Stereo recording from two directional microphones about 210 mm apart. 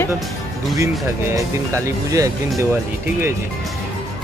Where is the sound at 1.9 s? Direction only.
15° right (ahead or behind).